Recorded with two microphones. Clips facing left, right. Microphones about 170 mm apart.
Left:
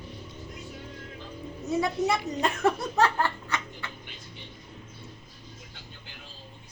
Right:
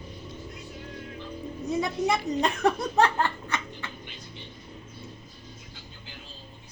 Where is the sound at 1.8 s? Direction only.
15° right (ahead or behind).